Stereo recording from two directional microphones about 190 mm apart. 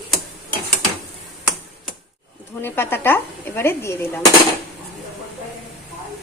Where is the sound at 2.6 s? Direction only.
10° left (ahead or behind).